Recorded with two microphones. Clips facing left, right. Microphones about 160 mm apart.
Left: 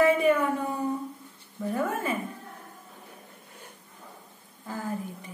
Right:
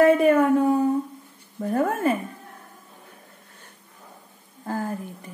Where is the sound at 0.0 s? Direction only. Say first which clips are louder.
Right 5 dB; 45° right (ahead or behind).